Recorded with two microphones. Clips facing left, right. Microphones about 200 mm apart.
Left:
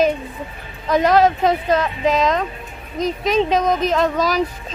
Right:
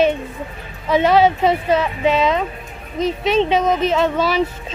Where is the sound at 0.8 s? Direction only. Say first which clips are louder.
Right 1 dB; 5° right (ahead or behind).